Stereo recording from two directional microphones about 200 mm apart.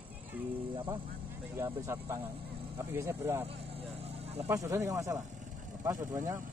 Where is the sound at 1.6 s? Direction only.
15° right (ahead or behind).